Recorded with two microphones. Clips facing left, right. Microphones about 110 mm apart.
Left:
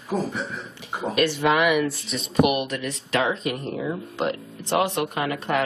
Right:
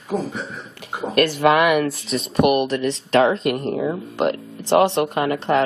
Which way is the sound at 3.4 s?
60° right (ahead or behind).